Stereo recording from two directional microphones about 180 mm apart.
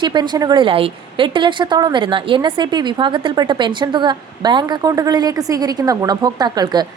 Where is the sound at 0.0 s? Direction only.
25° right (ahead or behind).